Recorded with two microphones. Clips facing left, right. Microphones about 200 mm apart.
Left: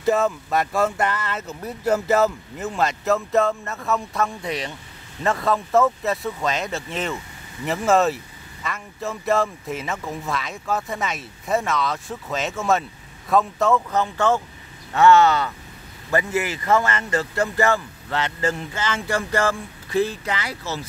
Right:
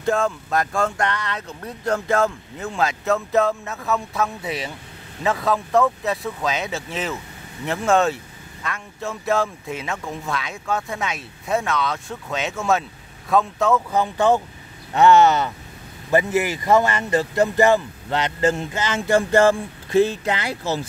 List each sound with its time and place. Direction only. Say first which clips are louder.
0.0 s speech: left 1 dB; 5° left (ahead or behind)
13.9 s speech: right 2 dB; 15° right (ahead or behind)